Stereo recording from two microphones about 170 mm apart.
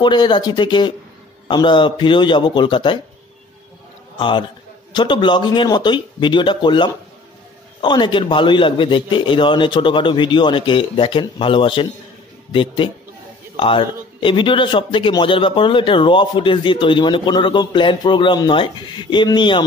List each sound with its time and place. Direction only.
0.0 s speech: 25° left (ahead or behind)
4.2 s a man's voice: 30° left (ahead or behind)